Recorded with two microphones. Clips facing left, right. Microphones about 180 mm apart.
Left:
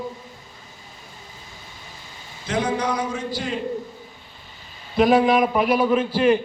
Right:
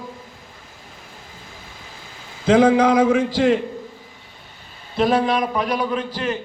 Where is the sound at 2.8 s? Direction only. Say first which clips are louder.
Right 10 dB; 90° right.